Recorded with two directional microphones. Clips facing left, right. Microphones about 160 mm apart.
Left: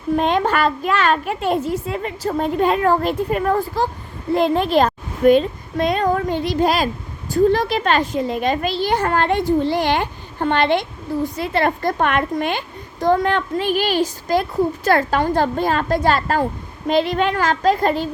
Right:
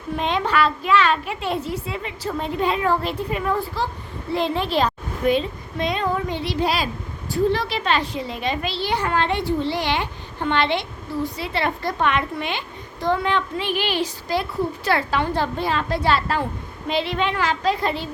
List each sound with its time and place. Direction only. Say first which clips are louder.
0.2 s a child's voice: left 1 dB; 45° left (ahead or behind)